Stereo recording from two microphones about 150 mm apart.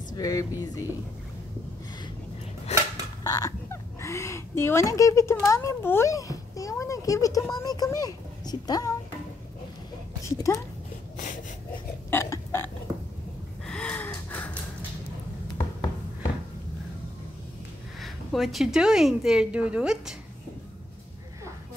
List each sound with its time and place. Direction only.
0.1 s speech: 25° left (ahead or behind)
2.7 s a sound: 45° left (ahead or behind)
3.3 s speech: 20° left (ahead or behind)
10.2 s speech: 20° left (ahead or behind)
12.1 s burping: 15° left (ahead or behind)
13.7 s gasp: 5° left (ahead or behind)
18.0 s speech: centre (ahead or behind)